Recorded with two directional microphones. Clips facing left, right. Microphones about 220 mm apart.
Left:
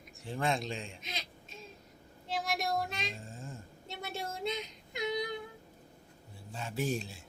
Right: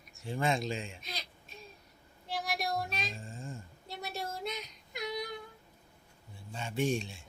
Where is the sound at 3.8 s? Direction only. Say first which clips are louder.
Even; 25° left (ahead or behind).